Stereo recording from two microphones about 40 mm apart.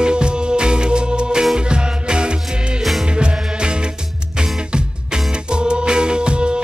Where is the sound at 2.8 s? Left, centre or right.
Centre.